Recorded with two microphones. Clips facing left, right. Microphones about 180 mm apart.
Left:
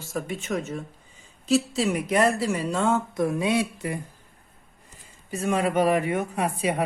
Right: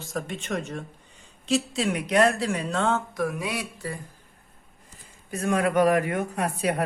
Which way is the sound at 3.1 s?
25° left (ahead or behind).